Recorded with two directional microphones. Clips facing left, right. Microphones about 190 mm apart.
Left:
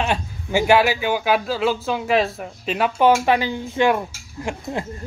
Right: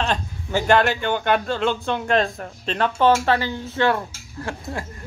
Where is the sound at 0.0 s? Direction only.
10° left (ahead or behind).